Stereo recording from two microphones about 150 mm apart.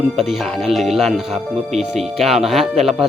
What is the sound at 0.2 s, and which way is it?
Speech, centre (ahead or behind).